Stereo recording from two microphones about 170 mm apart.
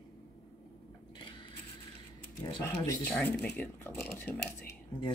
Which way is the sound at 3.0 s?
5° left (ahead or behind).